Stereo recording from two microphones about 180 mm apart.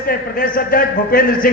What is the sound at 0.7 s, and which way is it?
Speech, 55° left (ahead or behind).